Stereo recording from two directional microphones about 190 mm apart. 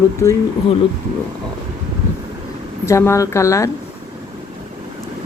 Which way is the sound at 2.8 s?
15° left (ahead or behind).